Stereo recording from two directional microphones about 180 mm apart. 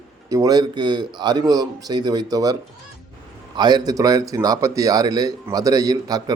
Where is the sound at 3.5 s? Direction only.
25° right (ahead or behind).